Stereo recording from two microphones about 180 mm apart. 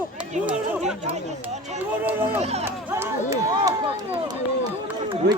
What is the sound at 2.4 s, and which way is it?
Run, 35° right (ahead or behind).